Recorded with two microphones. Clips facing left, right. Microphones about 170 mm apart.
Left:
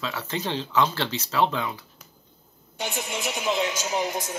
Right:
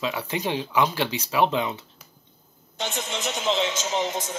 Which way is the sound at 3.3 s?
25° right (ahead or behind).